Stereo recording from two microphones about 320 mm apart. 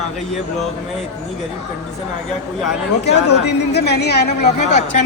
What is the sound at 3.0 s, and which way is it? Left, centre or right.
Speech, left.